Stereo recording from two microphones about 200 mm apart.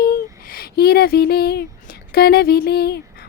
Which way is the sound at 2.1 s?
50° left (ahead or behind).